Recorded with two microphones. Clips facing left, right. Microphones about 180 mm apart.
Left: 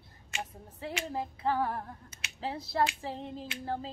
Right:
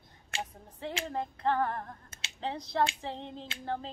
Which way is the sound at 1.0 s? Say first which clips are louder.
Right 1 dB; 5° left (ahead or behind).